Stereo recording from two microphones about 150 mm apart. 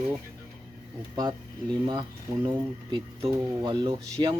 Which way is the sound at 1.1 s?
30° right (ahead or behind).